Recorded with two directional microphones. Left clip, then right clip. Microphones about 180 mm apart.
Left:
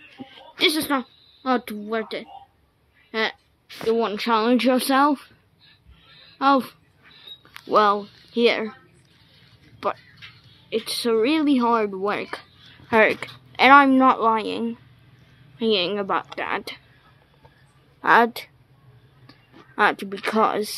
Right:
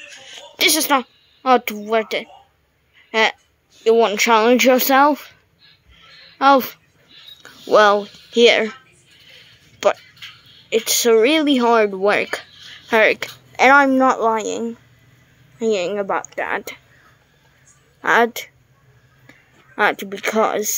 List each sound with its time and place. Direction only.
0.2 s a sound: 10° right (ahead or behind)
0.7 s speech: 35° right (ahead or behind)
3.8 s speech: 20° right (ahead or behind)
5.9 s a sound: 20° right (ahead or behind)
7.4 s speech: 20° right (ahead or behind)
9.8 s speech: 30° right (ahead or behind)
12.8 s a woman's voice: 5° right (ahead or behind)
18.0 s a woman's voice: 5° right (ahead or behind)
19.7 s a woman's voice: 5° right (ahead or behind)